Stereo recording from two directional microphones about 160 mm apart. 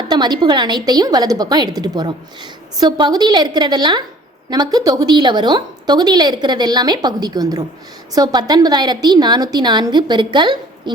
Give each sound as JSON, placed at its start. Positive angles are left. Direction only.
{"t": 0.1, "sound": "a woman's voice", "side_deg": -25}